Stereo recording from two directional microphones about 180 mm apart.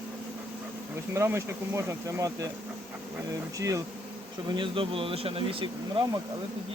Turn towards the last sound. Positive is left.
turn(degrees=-30)  # may be behind; listen again after turning